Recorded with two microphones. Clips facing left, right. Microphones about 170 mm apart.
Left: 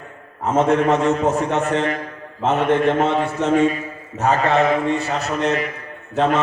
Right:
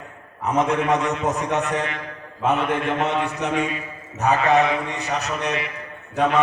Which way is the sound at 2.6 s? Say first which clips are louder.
Left 6 dB; 40° left (ahead or behind).